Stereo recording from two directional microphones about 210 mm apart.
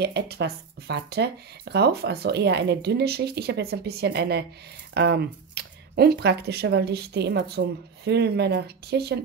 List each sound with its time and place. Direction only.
0.0 s speech: 50° right (ahead or behind)